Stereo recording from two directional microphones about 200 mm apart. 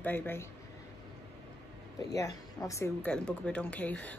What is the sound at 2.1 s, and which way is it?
Speech, 15° left (ahead or behind).